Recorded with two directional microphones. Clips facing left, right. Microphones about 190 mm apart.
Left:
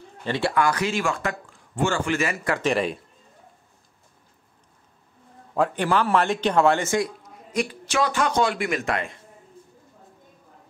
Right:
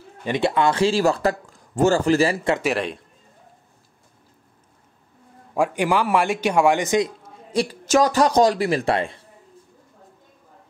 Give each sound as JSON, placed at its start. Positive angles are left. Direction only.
{"t": 0.2, "sound": "speech", "side_deg": -20}
{"t": 2.6, "sound": "speech", "side_deg": 0}
{"t": 5.5, "sound": "a man's voice", "side_deg": -10}
{"t": 7.8, "sound": "speech", "side_deg": -40}